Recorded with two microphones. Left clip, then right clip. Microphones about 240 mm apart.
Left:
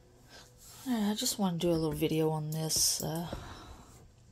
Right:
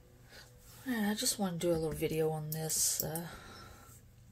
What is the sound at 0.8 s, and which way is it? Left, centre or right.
Speech, left.